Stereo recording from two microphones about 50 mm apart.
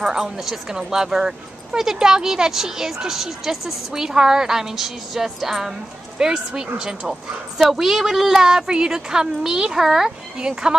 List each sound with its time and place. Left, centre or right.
0.1 s speech: centre